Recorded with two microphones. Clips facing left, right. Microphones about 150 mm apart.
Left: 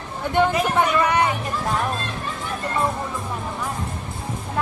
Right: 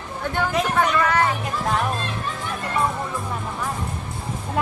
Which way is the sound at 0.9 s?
20° left (ahead or behind).